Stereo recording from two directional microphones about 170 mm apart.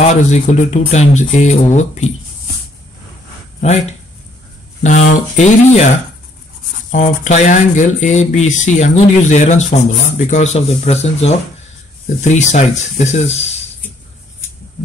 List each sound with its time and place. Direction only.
0.0 s speech: 45° left (ahead or behind)
4.8 s speech: 45° left (ahead or behind)